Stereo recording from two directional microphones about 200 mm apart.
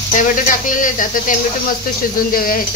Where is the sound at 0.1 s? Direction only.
40° left (ahead or behind).